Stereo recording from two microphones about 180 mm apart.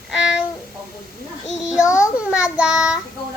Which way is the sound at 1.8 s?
15° left (ahead or behind).